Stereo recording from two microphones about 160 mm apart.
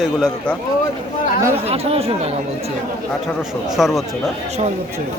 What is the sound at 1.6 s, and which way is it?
Speech, 40° right (ahead or behind).